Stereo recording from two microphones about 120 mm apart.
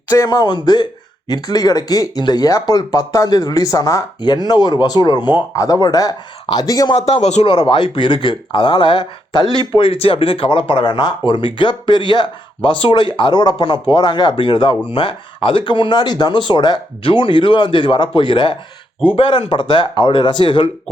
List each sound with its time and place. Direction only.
0.1 s speech: 30° left (ahead or behind)
6.9 s a man's voice: 60° left (ahead or behind)
7.4 s speech: 50° left (ahead or behind)
9.4 s speech: 35° right (ahead or behind)
9.7 s speech: 50° left (ahead or behind)